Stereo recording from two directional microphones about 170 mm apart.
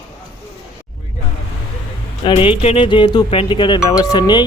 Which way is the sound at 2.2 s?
30° left (ahead or behind).